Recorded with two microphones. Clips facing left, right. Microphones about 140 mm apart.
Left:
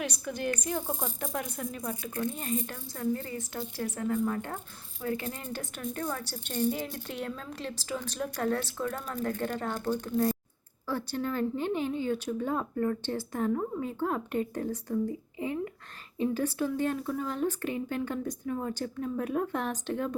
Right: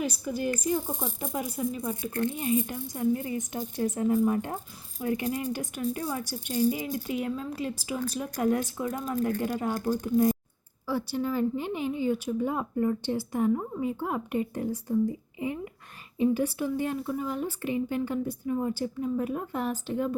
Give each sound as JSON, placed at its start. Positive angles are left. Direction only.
{"t": 0.0, "sound": "speech", "side_deg": -5}
{"t": 16.1, "sound": "speech", "side_deg": -10}